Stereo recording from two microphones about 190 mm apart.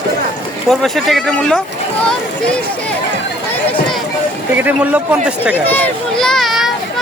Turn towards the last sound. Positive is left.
turn(degrees=0)  # may be behind; listen again after turning